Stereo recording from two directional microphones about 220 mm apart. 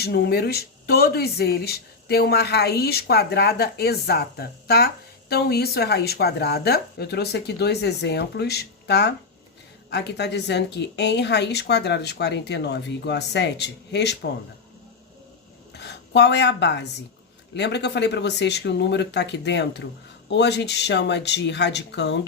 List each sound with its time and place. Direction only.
0.0 s speech: 45° left (ahead or behind)
15.7 s speech: 50° left (ahead or behind)